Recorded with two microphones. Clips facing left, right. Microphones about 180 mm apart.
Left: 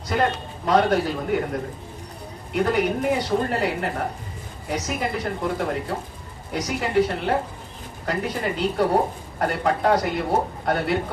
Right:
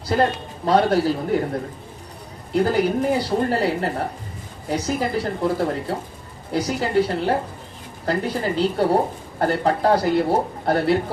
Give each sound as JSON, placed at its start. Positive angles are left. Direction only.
{"t": 0.1, "sound": "speech", "side_deg": -35}
{"t": 2.5, "sound": "speech", "side_deg": -30}